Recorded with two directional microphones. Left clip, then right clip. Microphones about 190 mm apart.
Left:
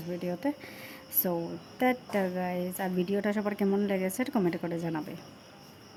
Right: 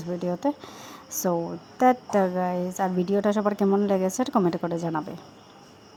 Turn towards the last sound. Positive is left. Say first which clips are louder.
# right 6 dB
turn(degrees=-15)  # may be behind; listen again after turning